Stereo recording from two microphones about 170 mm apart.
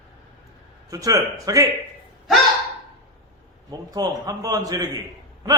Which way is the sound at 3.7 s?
20° right (ahead or behind).